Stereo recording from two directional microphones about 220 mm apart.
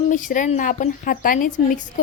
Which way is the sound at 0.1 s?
35° left (ahead or behind).